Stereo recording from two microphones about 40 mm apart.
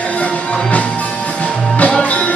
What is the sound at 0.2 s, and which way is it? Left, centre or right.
Music, left.